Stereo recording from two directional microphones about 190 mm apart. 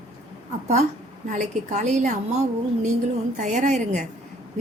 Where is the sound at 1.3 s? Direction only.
40° right (ahead or behind).